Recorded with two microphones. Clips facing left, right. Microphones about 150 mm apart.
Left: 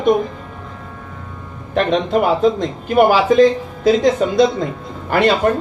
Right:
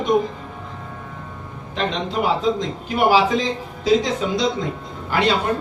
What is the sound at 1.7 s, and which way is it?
A man's voice, 50° left (ahead or behind).